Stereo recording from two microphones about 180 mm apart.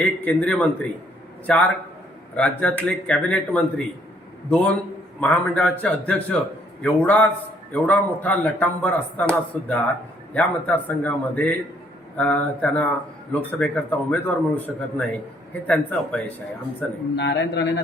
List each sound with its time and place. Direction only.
0.0 s a man's voice: 10° left (ahead or behind)
17.2 s a man's voice: 80° left